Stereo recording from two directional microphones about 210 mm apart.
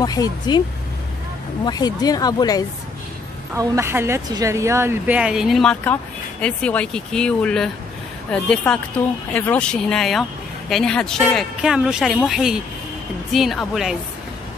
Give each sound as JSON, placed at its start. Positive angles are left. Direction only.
{"t": 0.0, "sound": "speech", "side_deg": 20}
{"t": 1.6, "sound": "speech", "side_deg": 20}
{"t": 3.5, "sound": "speech", "side_deg": -15}